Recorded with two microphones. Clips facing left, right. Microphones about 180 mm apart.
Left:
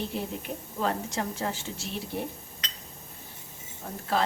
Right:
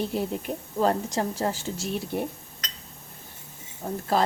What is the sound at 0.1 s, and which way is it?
A woman's voice, 40° right (ahead or behind).